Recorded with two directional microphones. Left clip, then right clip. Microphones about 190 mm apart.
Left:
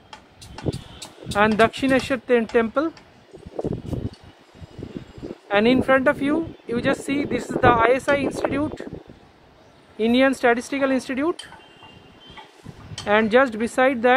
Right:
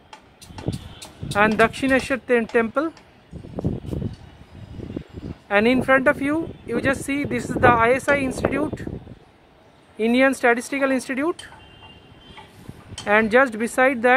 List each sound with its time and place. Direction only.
0.1 s music: 25° right (ahead or behind)
1.6 s speech: 5° right (ahead or behind)
5.5 s speech: 5° right (ahead or behind)
9.9 s speech: 5° right (ahead or behind)
13.0 s speech: 5° right (ahead or behind)